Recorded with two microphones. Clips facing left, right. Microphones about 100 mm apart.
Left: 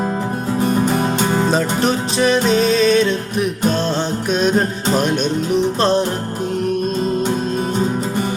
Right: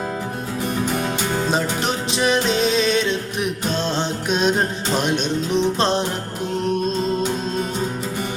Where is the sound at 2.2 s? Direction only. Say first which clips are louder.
Left 4 dB; 15° right (ahead or behind).